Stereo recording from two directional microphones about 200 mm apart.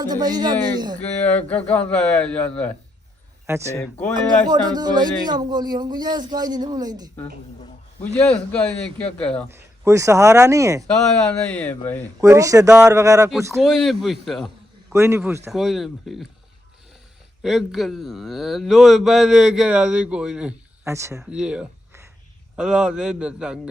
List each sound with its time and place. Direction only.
0.0 s speech: 20° right (ahead or behind)
0.9 s speech: 5° left (ahead or behind)
3.4 s speech: 10° right (ahead or behind)
8.2 s speech: 5° left (ahead or behind)
9.5 s speech: 15° right (ahead or behind)
10.8 s speech: 5° left (ahead or behind)
12.2 s speech: 15° right (ahead or behind)
13.6 s speech: centre (ahead or behind)
14.9 s speech: 15° right (ahead or behind)
15.5 s speech: centre (ahead or behind)
17.4 s speech: centre (ahead or behind)